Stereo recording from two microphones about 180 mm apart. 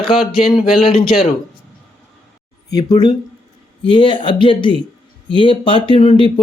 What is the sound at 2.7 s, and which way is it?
Speech, 20° left (ahead or behind).